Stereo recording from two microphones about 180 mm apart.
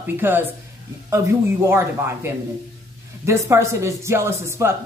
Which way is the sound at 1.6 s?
15° right (ahead or behind).